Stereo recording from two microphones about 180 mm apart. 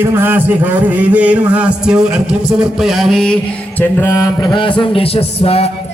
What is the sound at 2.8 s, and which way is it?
Mantra, centre (ahead or behind).